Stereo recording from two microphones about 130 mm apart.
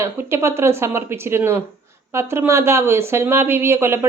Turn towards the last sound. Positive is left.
turn(degrees=-20)  # may be behind; listen again after turning